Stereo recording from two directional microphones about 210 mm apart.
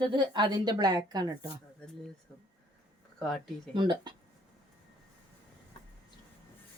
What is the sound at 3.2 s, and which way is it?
Speech, centre (ahead or behind).